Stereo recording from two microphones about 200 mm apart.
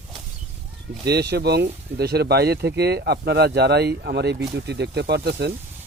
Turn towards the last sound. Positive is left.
turn(degrees=-55)  # may be behind; listen again after turning